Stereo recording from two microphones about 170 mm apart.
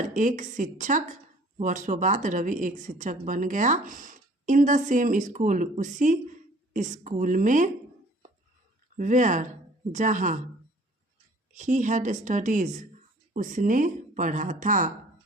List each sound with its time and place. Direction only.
0.0 s a woman's voice: 45° right (ahead or behind)
9.0 s a woman's voice: 50° right (ahead or behind)
11.5 s a woman's voice: 45° right (ahead or behind)